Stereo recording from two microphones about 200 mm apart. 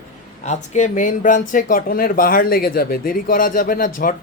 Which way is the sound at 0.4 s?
35° left (ahead or behind).